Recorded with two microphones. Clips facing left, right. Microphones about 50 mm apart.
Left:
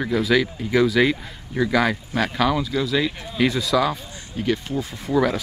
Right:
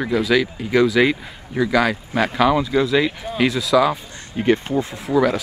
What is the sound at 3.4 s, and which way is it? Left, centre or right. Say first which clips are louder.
Speech: right 3 dB; centre.